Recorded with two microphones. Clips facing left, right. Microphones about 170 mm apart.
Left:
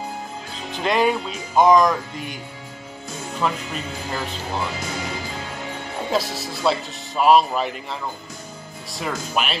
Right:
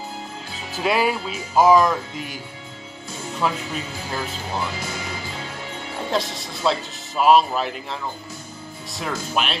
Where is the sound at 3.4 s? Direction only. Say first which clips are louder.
Even; 5° right (ahead or behind).